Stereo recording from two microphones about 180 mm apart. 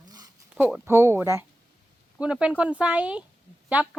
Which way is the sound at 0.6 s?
10° right (ahead or behind).